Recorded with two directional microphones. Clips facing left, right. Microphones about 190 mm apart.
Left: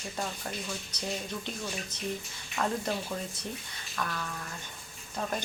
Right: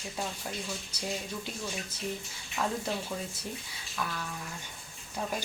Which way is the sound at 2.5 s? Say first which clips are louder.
Left 1 dB; 5° right (ahead or behind).